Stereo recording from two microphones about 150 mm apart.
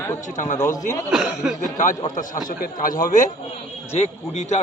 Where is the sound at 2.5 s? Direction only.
65° left (ahead or behind).